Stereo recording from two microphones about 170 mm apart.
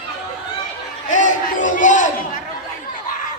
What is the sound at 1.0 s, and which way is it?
Crowd, 45° left (ahead or behind).